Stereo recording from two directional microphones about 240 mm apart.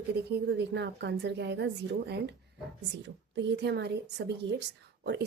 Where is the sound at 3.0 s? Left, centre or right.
Right.